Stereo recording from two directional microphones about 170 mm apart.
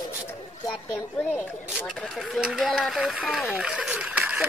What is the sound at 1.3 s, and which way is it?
Speech, centre (ahead or behind).